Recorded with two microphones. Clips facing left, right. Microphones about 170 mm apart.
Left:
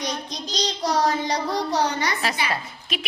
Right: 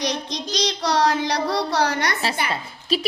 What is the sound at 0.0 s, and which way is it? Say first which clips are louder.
Child singing: right 4 dB; 90° right.